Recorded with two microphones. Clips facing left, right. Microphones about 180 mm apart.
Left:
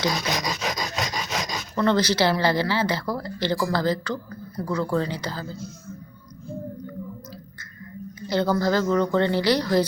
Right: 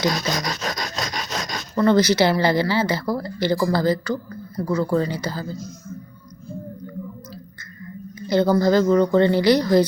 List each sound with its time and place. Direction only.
0.1 s filing: 20° left (ahead or behind)
0.6 s rub: 5° left (ahead or behind)
1.7 s speech: 10° right (ahead or behind)
8.3 s speech: 15° right (ahead or behind)